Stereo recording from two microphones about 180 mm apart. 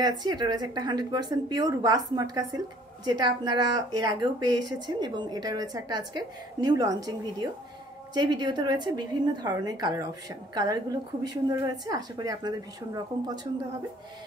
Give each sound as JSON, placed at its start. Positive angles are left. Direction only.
{"t": 0.0, "sound": "speech", "side_deg": -25}